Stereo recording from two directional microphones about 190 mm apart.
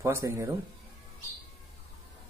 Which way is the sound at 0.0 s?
15° right (ahead or behind).